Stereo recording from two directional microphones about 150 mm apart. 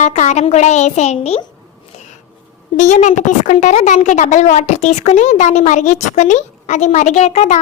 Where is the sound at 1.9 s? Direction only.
50° left (ahead or behind).